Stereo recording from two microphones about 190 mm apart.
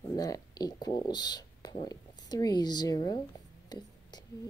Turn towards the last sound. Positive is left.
turn(degrees=20)  # may be behind; listen again after turning